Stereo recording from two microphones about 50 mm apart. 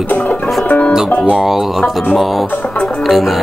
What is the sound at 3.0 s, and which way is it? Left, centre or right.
Music, centre.